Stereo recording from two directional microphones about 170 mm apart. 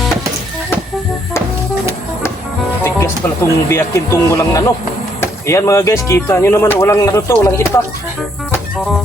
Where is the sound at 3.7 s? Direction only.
15° left (ahead or behind).